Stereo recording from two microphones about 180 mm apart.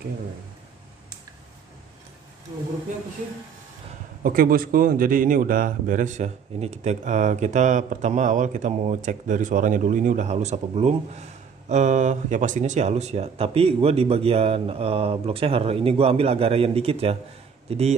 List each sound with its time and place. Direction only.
4.2 s a man's voice: 55° right (ahead or behind); by 17.9 s 35° right (ahead or behind)